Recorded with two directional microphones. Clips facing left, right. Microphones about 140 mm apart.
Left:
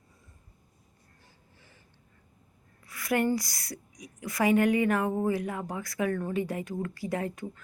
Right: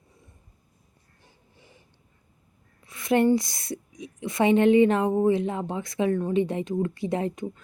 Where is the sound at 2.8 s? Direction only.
25° right (ahead or behind).